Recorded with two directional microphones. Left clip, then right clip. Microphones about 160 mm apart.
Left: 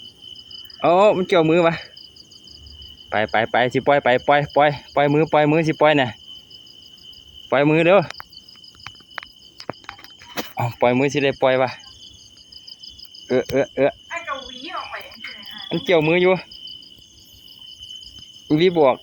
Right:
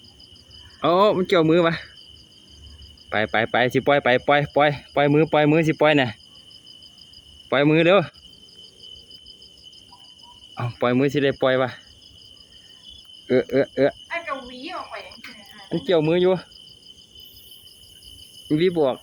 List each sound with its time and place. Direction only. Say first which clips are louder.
0.8 s speech: left 3 dB; 5° right (ahead or behind)
3.1 s speech: left 2 dB; 5° right (ahead or behind)
7.5 s speech: left 2 dB; 5° right (ahead or behind)
10.5 s a sound: left 5 dB; centre (ahead or behind)
10.8 s speech: left 2 dB; 15° right (ahead or behind)
13.2 s cricket: even; 25° right (ahead or behind)
14.1 s cricket: left 1 dB; 45° right (ahead or behind)
14.7 s cricket: left 3 dB; 30° right (ahead or behind)
15.9 s speech: left 3 dB; centre (ahead or behind)
18.4 s cricket: left 4 dB; 15° left (ahead or behind)